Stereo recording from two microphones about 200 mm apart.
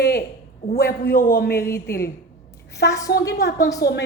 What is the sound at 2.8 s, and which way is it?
Speech, 55° left (ahead or behind).